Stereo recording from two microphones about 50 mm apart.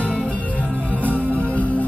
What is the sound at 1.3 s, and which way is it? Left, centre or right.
Music, left.